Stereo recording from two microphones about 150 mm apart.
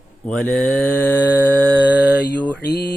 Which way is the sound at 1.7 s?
10° right (ahead or behind).